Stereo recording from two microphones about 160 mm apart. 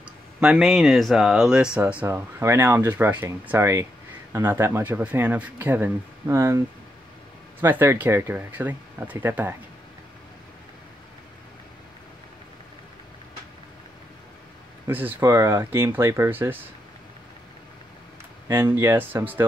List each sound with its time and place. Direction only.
0.4 s speech: centre (ahead or behind); by 6.6 s 20° right (ahead or behind)
7.6 s speech: 15° right (ahead or behind)
14.9 s speech: 10° right (ahead or behind)
18.5 s speech: 15° right (ahead or behind)